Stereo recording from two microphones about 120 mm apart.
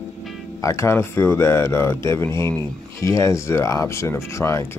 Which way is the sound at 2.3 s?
35° right (ahead or behind).